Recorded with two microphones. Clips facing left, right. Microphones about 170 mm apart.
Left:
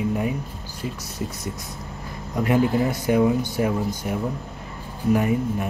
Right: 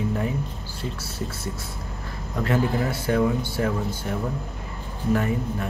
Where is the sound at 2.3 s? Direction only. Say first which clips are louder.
Left 3 dB; 15° left (ahead or behind).